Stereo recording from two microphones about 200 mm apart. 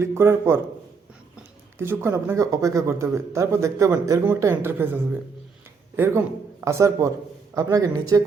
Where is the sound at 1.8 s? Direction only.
10° right (ahead or behind).